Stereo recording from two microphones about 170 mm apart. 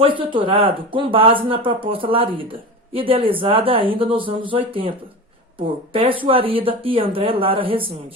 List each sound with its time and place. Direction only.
0.0 s speech: 30° right (ahead or behind)